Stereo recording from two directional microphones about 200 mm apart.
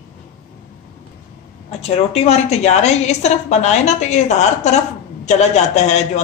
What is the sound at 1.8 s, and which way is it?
A woman's voice, 30° left (ahead or behind).